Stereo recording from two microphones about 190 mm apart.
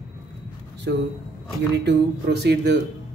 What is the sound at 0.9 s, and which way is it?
Speech, 65° right (ahead or behind).